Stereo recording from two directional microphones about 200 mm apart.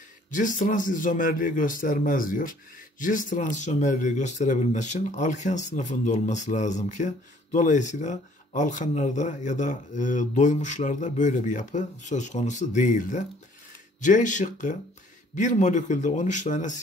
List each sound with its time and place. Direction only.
0.3 s speech: 40° left (ahead or behind)